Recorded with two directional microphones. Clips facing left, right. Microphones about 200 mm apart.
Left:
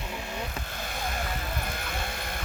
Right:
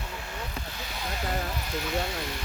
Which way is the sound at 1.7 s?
55° left (ahead or behind).